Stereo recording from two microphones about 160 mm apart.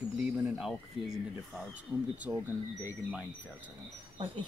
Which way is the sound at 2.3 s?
15° right (ahead or behind).